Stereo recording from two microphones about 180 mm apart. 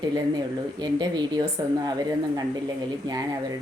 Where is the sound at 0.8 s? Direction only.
25° right (ahead or behind).